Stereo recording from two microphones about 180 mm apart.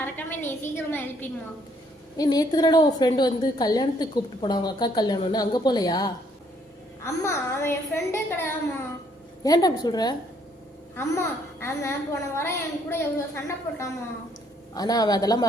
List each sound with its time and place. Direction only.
0.0 s a woman's voice: 10° left (ahead or behind)
2.1 s a woman's voice: 20° left (ahead or behind)